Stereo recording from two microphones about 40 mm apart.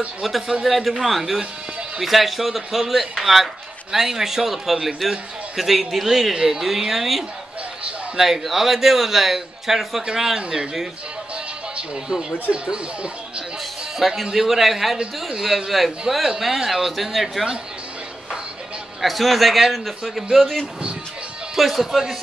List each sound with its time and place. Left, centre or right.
0.2 s a man's voice: centre
6.3 s a man's voice: centre
6.6 s a man's voice: centre
12.6 s speech: right
13.9 s a man's voice: centre
18.9 s a man's voice: centre